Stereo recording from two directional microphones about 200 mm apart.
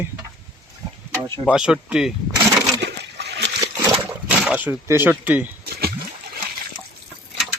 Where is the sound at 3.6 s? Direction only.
10° right (ahead or behind).